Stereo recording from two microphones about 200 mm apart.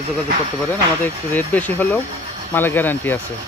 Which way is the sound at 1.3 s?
10° left (ahead or behind).